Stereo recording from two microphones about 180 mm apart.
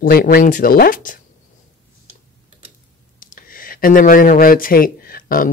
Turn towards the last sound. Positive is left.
turn(degrees=50)  # may be behind; listen again after turning